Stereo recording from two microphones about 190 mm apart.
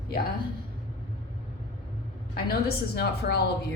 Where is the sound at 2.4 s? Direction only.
55° left (ahead or behind).